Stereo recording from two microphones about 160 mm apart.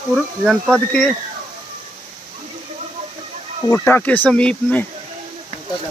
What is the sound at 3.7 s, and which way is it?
Speech, 10° left (ahead or behind).